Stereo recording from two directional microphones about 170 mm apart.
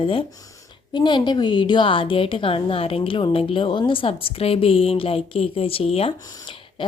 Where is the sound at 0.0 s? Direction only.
30° left (ahead or behind).